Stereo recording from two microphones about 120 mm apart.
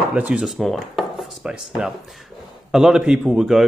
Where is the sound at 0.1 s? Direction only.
10° right (ahead or behind).